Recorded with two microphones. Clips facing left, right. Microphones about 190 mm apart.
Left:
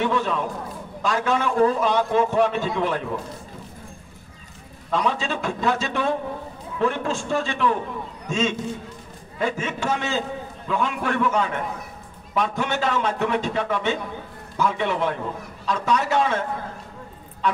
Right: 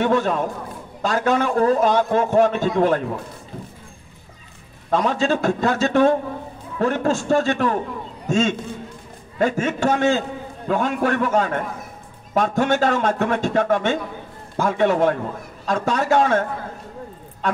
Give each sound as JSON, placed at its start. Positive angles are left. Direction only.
{"t": 0.0, "sound": "a man's voice", "side_deg": -45}
{"t": 4.9, "sound": "a man's voice", "side_deg": -45}